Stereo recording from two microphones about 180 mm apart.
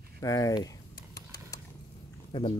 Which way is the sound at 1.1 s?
20° left (ahead or behind).